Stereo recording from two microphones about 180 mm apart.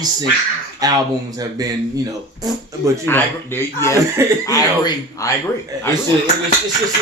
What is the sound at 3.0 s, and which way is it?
Speech, 10° left (ahead or behind).